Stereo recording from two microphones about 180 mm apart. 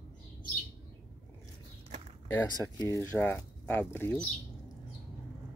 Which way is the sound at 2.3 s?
20° left (ahead or behind).